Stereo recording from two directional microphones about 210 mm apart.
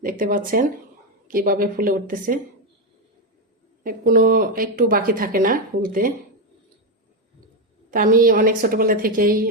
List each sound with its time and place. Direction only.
0.0 s a woman's voice: 40° right (ahead or behind)
3.8 s a woman's voice: 40° right (ahead or behind)
7.9 s a woman's voice: 40° right (ahead or behind)